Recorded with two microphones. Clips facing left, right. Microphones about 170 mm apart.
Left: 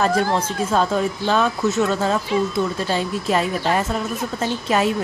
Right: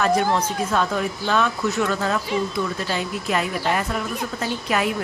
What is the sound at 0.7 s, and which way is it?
Speech, 30° left (ahead or behind).